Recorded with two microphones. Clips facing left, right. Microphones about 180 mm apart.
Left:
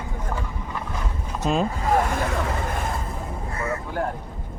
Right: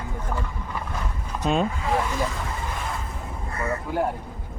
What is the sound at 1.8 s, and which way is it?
Speech, 50° left (ahead or behind).